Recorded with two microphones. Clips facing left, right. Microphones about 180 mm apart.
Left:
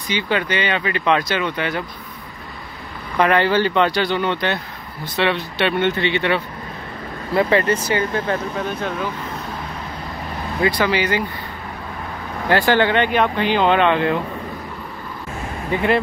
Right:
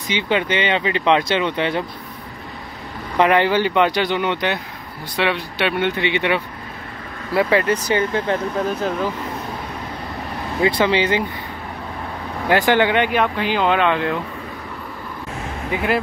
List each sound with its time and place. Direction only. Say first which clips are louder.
0.1 s speech: right 1 dB; 20° right (ahead or behind)
3.2 s speech: right 1 dB; 15° right (ahead or behind)
10.6 s speech: right 2 dB; 25° right (ahead or behind)
12.4 s speech: even; 15° right (ahead or behind); by 14.1 s centre (ahead or behind)
15.7 s speech: left 2 dB; 5° right (ahead or behind)